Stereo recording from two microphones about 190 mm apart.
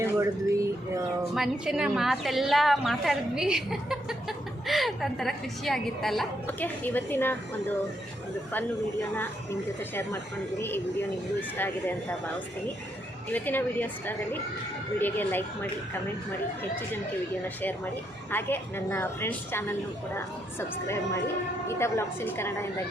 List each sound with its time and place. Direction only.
0.0 s a sound: 15° right (ahead or behind)
1.4 s a woman's voice: 5° right (ahead or behind)
9.9 s a woman's voice: 10° left (ahead or behind)
11.3 s a woman's voice: 10° left (ahead or behind)
13.3 s a woman's voice: 10° left (ahead or behind)
18.3 s a woman's voice: 10° left (ahead or behind)